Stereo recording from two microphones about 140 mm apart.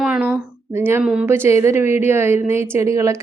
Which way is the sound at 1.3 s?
20° right (ahead or behind).